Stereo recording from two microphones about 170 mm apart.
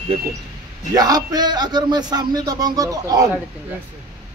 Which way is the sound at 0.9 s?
25° right (ahead or behind).